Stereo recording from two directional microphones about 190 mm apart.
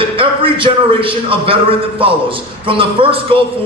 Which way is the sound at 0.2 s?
30° right (ahead or behind).